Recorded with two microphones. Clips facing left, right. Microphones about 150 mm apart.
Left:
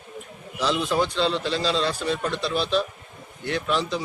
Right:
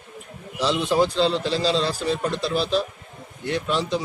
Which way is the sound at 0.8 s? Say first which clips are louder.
Right 6 dB; 30° right (ahead or behind).